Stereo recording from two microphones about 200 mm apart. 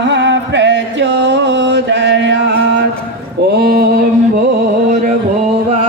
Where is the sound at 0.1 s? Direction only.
60° right (ahead or behind).